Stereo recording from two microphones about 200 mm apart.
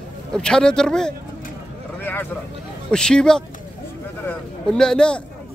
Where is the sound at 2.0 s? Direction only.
10° left (ahead or behind).